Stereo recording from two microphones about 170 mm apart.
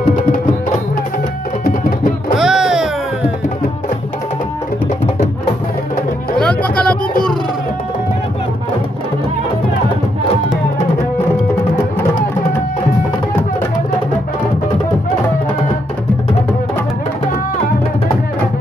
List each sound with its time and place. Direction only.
1.6 s music: 55° left (ahead or behind)
2.3 s music: 5° right (ahead or behind)
6.3 s music: 5° left (ahead or behind)